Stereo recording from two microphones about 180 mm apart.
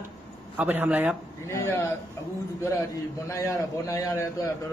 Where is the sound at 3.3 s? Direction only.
15° left (ahead or behind).